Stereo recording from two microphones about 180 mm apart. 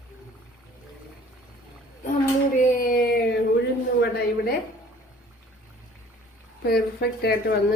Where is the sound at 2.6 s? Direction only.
55° left (ahead or behind).